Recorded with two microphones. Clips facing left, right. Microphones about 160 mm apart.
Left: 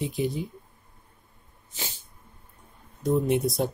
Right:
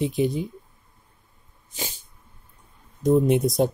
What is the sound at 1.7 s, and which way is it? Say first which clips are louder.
Sneeze: right 4 dB; 15° right (ahead or behind).